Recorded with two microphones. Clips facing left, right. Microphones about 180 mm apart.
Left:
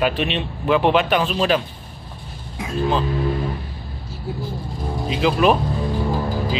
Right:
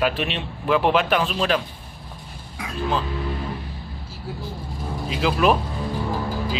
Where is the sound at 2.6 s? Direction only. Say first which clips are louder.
Left 4 dB; 25° left (ahead or behind).